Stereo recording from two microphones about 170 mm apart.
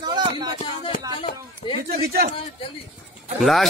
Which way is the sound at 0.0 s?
25° right (ahead or behind).